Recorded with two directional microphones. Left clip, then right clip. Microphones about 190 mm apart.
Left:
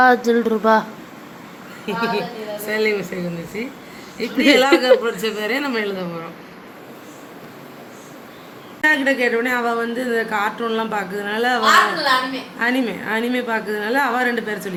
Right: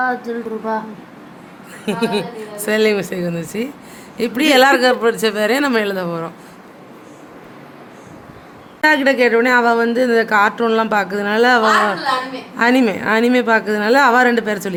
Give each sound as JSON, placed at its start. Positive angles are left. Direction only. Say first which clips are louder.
{"t": 0.0, "sound": "speech", "louder": "left 6 dB", "side_deg": 25}
{"t": 1.9, "sound": "speech", "louder": "right 2 dB", "side_deg": -70}
{"t": 8.8, "sound": "speech", "louder": "right 4 dB", "side_deg": -75}